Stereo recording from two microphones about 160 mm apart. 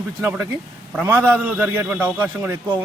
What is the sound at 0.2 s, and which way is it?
A man's voice, 10° right (ahead or behind).